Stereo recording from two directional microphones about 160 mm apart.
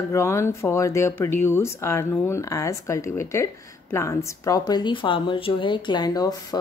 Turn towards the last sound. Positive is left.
turn(degrees=25)  # may be behind; listen again after turning